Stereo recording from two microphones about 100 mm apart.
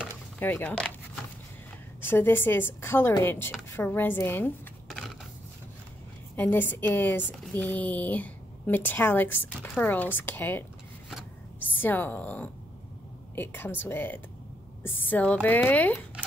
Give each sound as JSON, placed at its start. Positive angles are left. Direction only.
{"t": 0.4, "sound": "a woman's voice", "side_deg": 20}
{"t": 2.0, "sound": "speech", "side_deg": 20}
{"t": 4.8, "sound": "a sound", "side_deg": 0}
{"t": 6.3, "sound": "a woman's voice", "side_deg": 20}
{"t": 11.7, "sound": "a woman's voice", "side_deg": 20}